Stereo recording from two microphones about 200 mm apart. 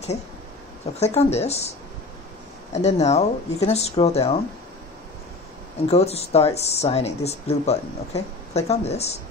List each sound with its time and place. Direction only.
0.9 s speech: 30° left (ahead or behind)
2.7 s speech: 35° left (ahead or behind)
5.9 s speech: 30° left (ahead or behind)